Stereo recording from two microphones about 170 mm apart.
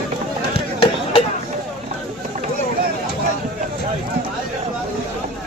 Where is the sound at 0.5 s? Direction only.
35° left (ahead or behind).